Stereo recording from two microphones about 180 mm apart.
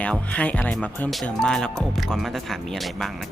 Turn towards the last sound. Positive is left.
turn(degrees=0)  # may be behind; listen again after turning